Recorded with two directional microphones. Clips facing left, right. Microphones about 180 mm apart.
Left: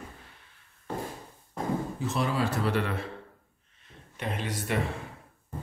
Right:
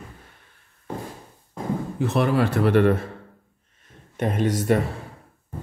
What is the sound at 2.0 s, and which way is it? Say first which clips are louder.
A man's voice: right 11 dB; 60° right (ahead or behind).